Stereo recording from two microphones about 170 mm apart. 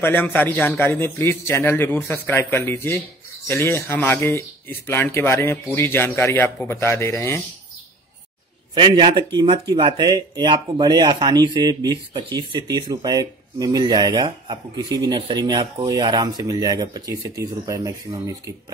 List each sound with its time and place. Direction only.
0.0 s speech: 10° left (ahead or behind)
8.7 s speech: 25° right (ahead or behind)